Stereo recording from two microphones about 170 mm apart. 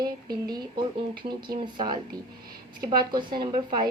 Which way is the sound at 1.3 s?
25° right (ahead or behind).